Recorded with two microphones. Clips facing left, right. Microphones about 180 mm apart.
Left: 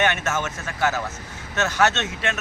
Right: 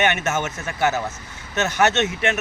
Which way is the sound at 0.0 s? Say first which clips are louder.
Right 2 dB; 20° right (ahead or behind).